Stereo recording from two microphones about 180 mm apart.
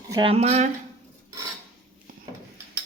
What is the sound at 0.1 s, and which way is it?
Speech, 30° right (ahead or behind).